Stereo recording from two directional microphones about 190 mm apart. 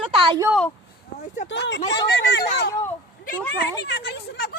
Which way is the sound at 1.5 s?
65° left (ahead or behind).